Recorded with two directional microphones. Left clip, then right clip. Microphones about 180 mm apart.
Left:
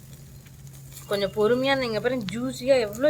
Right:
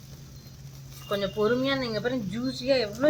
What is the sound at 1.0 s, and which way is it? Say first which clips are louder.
A woman's voice: left 3 dB; 5° left (ahead or behind).